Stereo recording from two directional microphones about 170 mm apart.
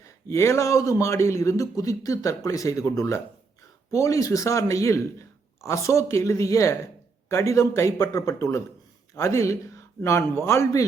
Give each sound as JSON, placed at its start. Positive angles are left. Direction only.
{"t": 0.0, "sound": "a man's voice", "side_deg": 15}